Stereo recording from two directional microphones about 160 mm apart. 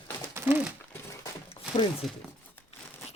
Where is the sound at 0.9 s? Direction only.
20° left (ahead or behind).